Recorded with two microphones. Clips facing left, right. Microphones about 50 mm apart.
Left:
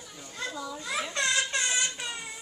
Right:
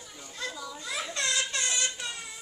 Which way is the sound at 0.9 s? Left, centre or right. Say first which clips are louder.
Left 3 dB; left.